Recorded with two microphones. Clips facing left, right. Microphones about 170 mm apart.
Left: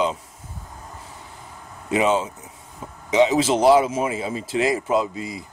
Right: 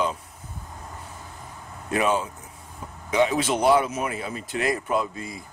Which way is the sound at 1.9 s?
20° left (ahead or behind).